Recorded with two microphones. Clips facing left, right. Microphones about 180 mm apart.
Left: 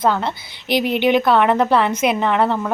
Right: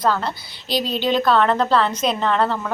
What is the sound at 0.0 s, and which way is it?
Speech, 20° left (ahead or behind).